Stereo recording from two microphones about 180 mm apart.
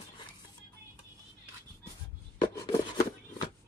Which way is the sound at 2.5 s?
15° left (ahead or behind).